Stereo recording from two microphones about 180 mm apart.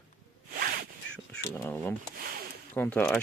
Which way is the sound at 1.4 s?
15° left (ahead or behind).